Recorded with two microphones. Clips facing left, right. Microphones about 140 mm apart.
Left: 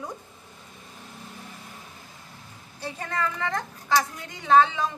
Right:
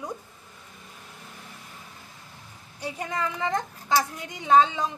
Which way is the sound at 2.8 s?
15° right (ahead or behind).